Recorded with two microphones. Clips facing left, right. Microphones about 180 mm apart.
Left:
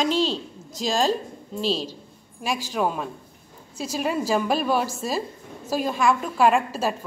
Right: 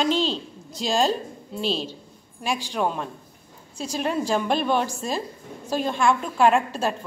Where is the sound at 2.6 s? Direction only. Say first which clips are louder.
Left 2 dB; 5° left (ahead or behind).